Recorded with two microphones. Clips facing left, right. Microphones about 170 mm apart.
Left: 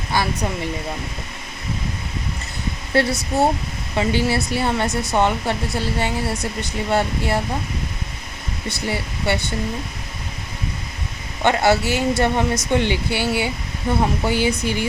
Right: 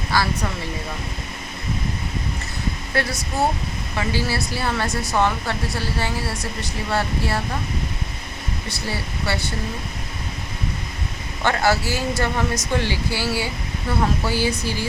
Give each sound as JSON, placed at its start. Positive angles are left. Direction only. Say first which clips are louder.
{"t": 0.1, "sound": "speech", "louder": "even", "side_deg": 20}
{"t": 2.9, "sound": "speech", "louder": "left 7 dB", "side_deg": 25}
{"t": 8.9, "sound": "speech", "louder": "left 4 dB", "side_deg": 20}
{"t": 11.4, "sound": "speech", "louder": "left 3 dB", "side_deg": 20}